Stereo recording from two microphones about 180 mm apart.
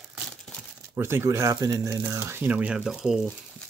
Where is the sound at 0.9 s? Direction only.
15° right (ahead or behind).